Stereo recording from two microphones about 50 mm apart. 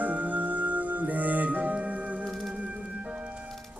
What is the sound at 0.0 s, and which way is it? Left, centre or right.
Music, right.